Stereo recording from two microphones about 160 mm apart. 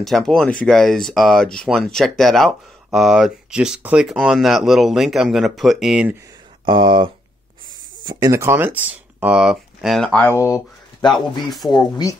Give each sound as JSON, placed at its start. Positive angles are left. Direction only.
{"t": 0.0, "sound": "speech", "side_deg": 0}
{"t": 6.6, "sound": "speech", "side_deg": -30}
{"t": 10.4, "sound": "speech", "side_deg": 25}
{"t": 11.4, "sound": "speech", "side_deg": 0}